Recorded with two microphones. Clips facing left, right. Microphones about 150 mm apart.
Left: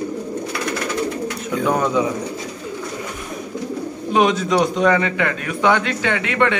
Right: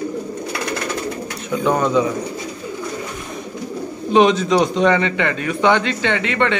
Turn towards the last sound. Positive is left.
turn(degrees=5)  # may be behind; listen again after turning